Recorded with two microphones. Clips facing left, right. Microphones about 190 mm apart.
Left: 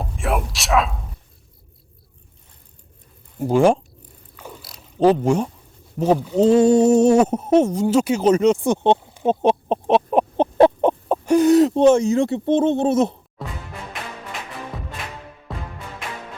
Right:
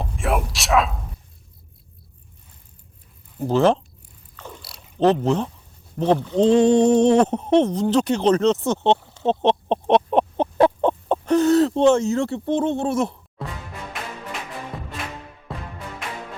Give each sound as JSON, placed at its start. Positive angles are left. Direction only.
{"t": 0.0, "sound": "a sound", "side_deg": 0}
{"t": 3.3, "sound": "speech", "side_deg": 10}
{"t": 4.4, "sound": "mechanisms", "side_deg": 10}
{"t": 4.9, "sound": "speech", "side_deg": 10}
{"t": 10.3, "sound": "chicken", "side_deg": 20}
{"t": 11.1, "sound": "speech", "side_deg": 10}